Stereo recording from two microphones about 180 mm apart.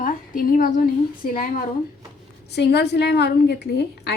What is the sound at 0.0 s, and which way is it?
A woman's voice, 50° left (ahead or behind).